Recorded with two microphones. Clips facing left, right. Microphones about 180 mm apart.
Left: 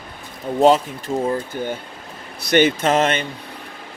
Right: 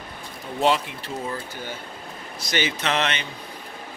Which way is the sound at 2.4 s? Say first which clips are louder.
Left 10 dB; 55° left (ahead or behind).